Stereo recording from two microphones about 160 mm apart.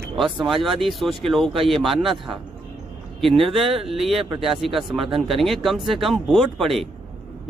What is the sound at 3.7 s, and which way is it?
Speech, 35° right (ahead or behind).